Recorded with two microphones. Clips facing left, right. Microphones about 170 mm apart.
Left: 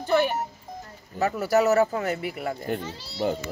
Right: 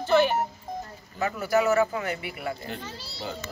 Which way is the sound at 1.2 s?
40° left (ahead or behind).